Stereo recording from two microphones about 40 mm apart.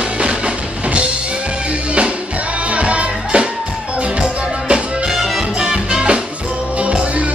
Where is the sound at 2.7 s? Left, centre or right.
Right.